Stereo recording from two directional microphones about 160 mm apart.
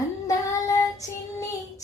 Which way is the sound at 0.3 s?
20° left (ahead or behind).